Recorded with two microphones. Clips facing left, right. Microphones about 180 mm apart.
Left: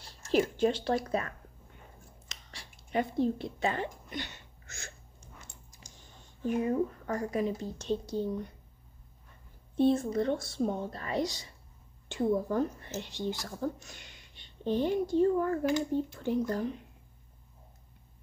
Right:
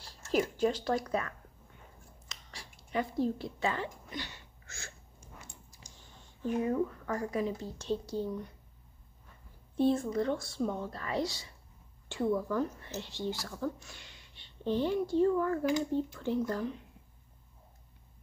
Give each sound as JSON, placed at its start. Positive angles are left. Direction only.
{"t": 0.3, "sound": "speech", "side_deg": 25}
{"t": 2.2, "sound": "a sound", "side_deg": 20}
{"t": 6.7, "sound": "speech", "side_deg": 40}
{"t": 7.3, "sound": "speech", "side_deg": 20}
{"t": 9.8, "sound": "speech", "side_deg": 20}
{"t": 15.2, "sound": "speech", "side_deg": 35}
{"t": 15.9, "sound": "speech", "side_deg": 15}
{"t": 16.4, "sound": "speech", "side_deg": 40}